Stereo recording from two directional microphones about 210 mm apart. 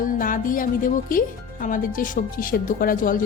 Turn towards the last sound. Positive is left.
turn(degrees=40)  # may be behind; listen again after turning